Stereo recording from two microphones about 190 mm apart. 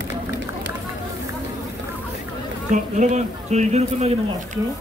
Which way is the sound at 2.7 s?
40° right (ahead or behind).